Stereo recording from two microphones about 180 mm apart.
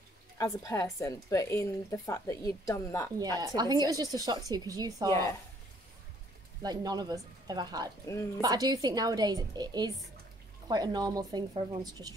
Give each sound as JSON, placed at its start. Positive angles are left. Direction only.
{"t": 0.4, "sound": "speech", "side_deg": 20}
{"t": 3.3, "sound": "a woman's voice", "side_deg": -20}
{"t": 6.6, "sound": "a woman's voice", "side_deg": -20}